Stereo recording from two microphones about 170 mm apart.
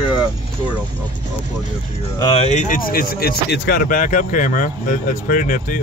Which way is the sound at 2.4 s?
45° left (ahead or behind).